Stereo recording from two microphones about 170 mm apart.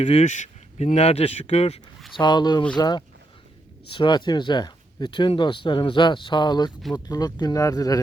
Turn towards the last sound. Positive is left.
turn(degrees=20)  # may be behind; listen again after turning